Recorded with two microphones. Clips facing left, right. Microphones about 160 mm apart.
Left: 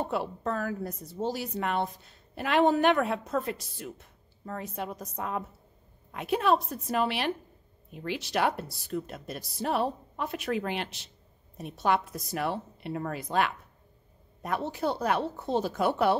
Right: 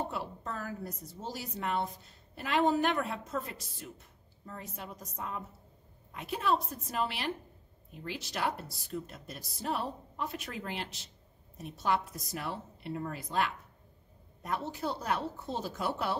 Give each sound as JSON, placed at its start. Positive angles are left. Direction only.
{"t": 0.1, "sound": "speech", "side_deg": 75}